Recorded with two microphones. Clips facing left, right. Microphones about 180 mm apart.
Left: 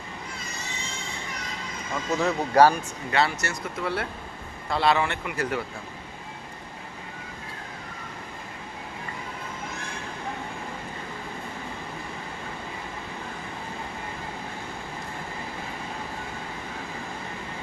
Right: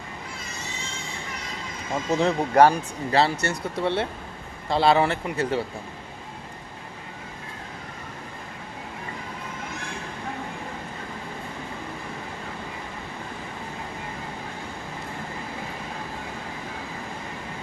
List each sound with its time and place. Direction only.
2.0 s speech: 25° right (ahead or behind)